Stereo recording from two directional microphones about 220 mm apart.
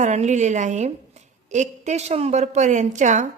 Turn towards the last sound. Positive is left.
turn(degrees=-35)  # may be behind; listen again after turning